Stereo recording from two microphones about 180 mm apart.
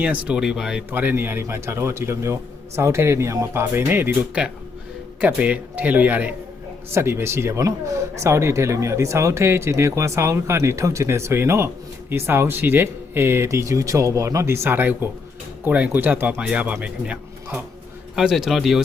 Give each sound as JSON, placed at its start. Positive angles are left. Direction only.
{"t": 0.0, "sound": "a man's voice", "side_deg": -5}